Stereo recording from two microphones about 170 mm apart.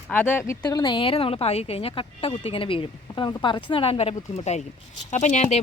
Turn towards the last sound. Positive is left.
turn(degrees=45)  # may be behind; listen again after turning